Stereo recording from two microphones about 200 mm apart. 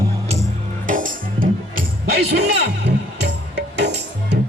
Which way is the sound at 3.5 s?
60° right (ahead or behind).